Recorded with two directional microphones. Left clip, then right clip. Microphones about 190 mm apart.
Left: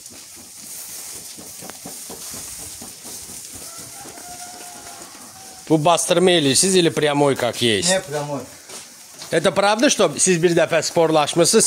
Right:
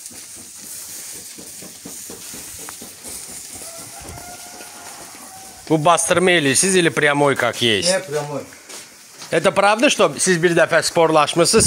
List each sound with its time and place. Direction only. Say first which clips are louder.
5.7 s a man's voice: right 1 dB; 20° left (ahead or behind)
9.3 s speech: right 2 dB; 15° left (ahead or behind)